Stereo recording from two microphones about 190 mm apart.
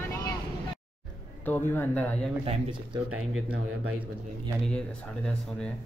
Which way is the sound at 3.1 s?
90° right.